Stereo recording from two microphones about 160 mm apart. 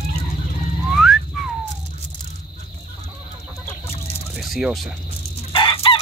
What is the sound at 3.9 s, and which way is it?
Chicken, 40° left (ahead or behind).